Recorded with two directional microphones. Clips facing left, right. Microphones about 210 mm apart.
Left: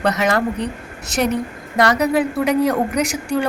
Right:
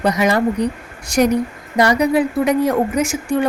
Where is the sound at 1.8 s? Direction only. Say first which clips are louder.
Right 2 dB; 10° right (ahead or behind).